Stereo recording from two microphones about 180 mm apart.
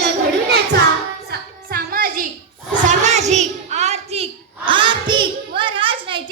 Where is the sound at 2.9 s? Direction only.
40° right (ahead or behind).